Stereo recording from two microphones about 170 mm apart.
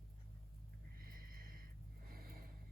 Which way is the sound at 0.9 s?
60° right (ahead or behind).